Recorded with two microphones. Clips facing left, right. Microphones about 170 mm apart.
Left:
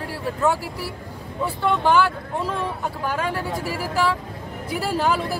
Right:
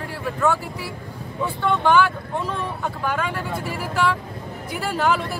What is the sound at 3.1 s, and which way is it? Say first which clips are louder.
Speech: left 2 dB; 40° left (ahead or behind).